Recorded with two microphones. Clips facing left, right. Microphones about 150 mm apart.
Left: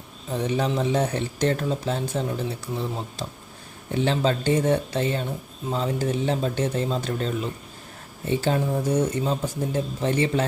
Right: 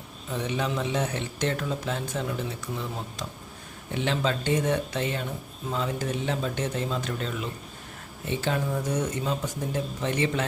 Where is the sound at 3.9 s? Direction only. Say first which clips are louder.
Left 4 dB; 35° left (ahead or behind).